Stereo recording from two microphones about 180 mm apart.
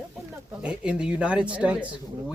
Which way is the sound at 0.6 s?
5° right (ahead or behind).